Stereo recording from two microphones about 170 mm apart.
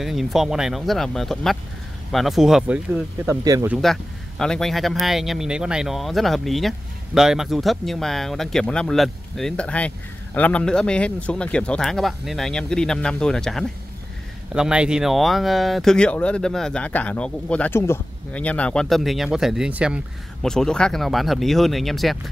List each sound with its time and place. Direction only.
0.0 s speech: centre (ahead or behind)
3.3 s speech: 15° right (ahead or behind)
3.7 s speech: centre (ahead or behind)